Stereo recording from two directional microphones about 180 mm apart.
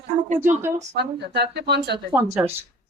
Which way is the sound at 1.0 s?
65° right (ahead or behind).